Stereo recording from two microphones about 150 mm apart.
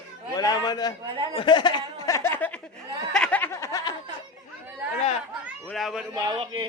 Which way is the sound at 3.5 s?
20° left (ahead or behind).